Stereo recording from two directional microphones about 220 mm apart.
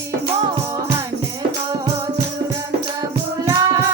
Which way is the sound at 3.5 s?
15° right (ahead or behind).